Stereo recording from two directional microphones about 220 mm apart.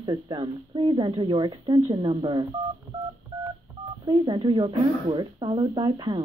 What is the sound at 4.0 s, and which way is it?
Speech, 20° right (ahead or behind).